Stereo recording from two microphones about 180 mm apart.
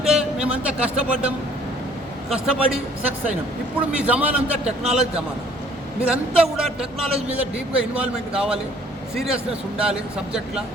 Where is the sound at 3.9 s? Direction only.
5° right (ahead or behind).